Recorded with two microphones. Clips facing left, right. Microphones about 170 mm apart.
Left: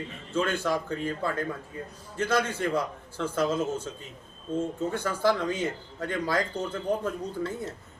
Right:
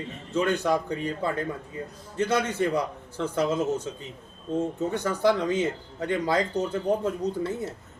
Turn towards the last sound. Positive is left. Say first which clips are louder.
# right 4 dB
turn(degrees=-20)  # may be behind; listen again after turning